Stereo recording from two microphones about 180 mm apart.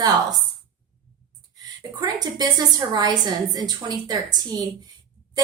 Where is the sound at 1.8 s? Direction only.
20° right (ahead or behind).